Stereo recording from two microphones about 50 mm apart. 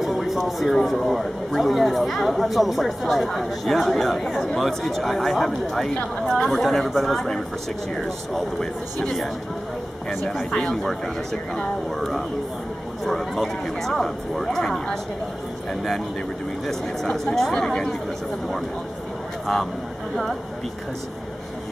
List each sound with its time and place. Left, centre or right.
0.0 s a sound: centre
0.4 s speech: centre
10.5 s speech: centre
16.6 s speech: centre
19.4 s speech: centre